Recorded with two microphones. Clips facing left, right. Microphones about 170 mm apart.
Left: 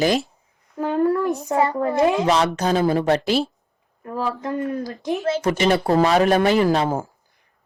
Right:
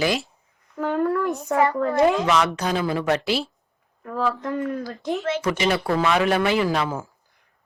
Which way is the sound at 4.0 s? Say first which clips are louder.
Right 1 dB; 25° left (ahead or behind).